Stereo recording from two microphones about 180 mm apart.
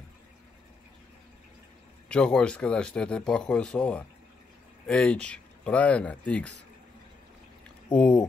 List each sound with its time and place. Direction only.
2.0 s speech: 5° left (ahead or behind)
7.9 s speech: 5° left (ahead or behind)